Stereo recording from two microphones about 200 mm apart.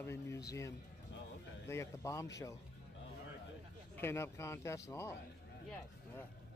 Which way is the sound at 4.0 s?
10° left (ahead or behind).